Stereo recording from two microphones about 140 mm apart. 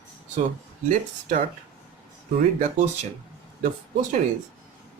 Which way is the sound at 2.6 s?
60° right (ahead or behind).